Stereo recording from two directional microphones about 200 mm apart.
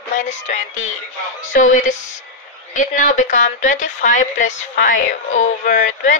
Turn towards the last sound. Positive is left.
turn(degrees=40)  # may be behind; listen again after turning